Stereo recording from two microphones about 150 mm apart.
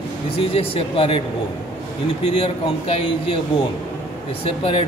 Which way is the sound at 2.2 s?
35° left (ahead or behind).